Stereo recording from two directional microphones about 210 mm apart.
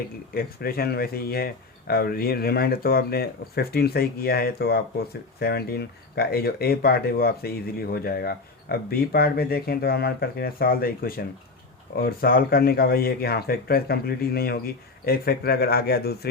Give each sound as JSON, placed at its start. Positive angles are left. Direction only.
{"t": 0.3, "sound": "speech", "side_deg": 45}